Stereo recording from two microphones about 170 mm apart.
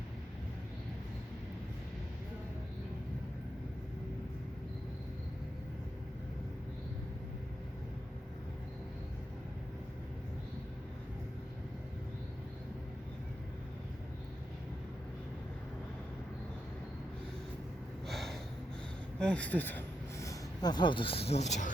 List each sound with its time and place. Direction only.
18.0 s snort: centre (ahead or behind)
19.2 s speech: 5° left (ahead or behind); by 21.7 s 40° left (ahead or behind)